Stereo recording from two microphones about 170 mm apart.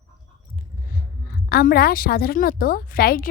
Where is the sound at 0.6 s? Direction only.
55° left (ahead or behind).